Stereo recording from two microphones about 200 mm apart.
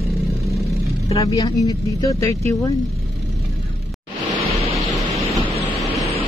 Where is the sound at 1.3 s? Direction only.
20° left (ahead or behind).